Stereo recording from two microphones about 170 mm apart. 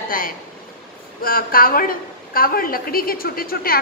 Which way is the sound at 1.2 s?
60° left (ahead or behind).